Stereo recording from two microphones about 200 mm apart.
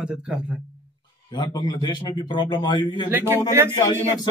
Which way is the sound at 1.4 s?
20° left (ahead or behind).